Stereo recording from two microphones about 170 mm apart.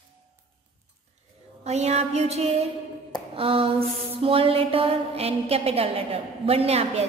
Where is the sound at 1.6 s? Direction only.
40° right (ahead or behind).